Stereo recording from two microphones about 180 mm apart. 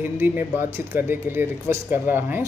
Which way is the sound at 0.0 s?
10° right (ahead or behind).